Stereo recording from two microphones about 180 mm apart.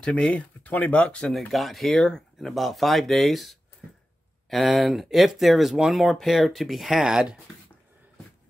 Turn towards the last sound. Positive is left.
turn(degrees=-5)  # may be behind; listen again after turning